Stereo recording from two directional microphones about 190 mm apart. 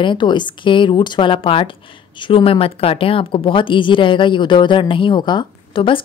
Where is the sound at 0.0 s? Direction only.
25° left (ahead or behind).